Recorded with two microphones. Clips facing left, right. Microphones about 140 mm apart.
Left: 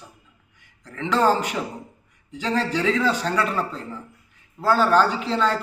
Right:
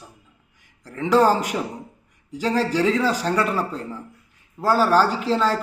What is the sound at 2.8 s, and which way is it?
Speech, 35° right (ahead or behind).